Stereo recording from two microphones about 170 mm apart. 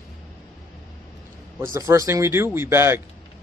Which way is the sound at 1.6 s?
15° right (ahead or behind).